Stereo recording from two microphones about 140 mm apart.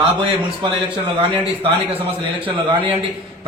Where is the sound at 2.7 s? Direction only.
40° right (ahead or behind).